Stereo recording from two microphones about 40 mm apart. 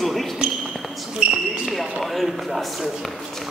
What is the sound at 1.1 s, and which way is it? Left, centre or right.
Basketball bounce, right.